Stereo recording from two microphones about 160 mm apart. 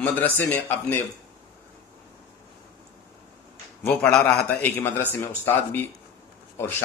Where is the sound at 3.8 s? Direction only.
5° left (ahead or behind).